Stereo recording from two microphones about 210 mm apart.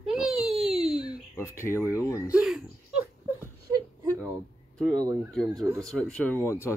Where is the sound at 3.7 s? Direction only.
15° right (ahead or behind).